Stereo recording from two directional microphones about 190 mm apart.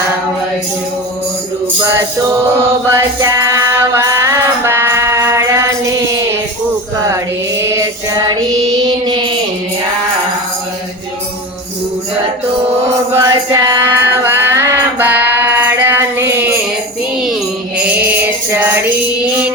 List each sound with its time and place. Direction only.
2.9 s a sound: 15° right (ahead or behind)
7.6 s music: 15° right (ahead or behind)
13.1 s music: 15° right (ahead or behind)
17.7 s mantra: 5° right (ahead or behind)